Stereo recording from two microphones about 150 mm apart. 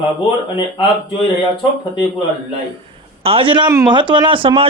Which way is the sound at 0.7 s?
30° left (ahead or behind).